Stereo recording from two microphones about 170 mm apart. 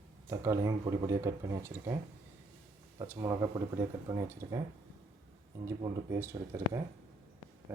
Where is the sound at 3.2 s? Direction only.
15° right (ahead or behind).